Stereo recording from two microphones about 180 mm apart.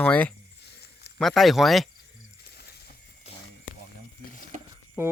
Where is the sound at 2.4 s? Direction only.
65° left (ahead or behind).